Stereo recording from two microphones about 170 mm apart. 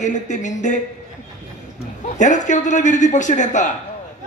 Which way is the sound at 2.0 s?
45° left (ahead or behind).